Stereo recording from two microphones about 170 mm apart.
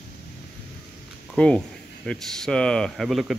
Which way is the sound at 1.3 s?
5° left (ahead or behind).